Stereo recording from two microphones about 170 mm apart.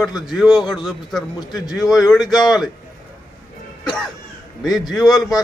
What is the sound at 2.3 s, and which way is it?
Speech, centre (ahead or behind).